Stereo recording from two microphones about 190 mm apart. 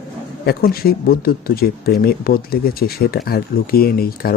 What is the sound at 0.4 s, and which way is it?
Speech, 55° left (ahead or behind).